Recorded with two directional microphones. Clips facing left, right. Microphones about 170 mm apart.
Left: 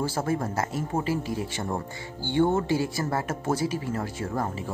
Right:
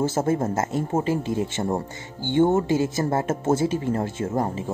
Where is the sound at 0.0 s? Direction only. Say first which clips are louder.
Right 5 dB; 25° right (ahead or behind).